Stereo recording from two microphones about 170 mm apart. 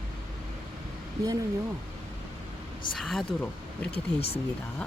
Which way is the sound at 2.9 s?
Centre (ahead or behind).